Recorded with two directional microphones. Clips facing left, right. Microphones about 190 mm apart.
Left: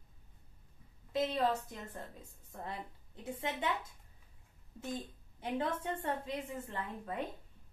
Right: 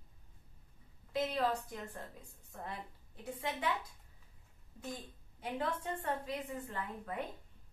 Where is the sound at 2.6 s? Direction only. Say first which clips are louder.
Left 2 dB; 20° left (ahead or behind).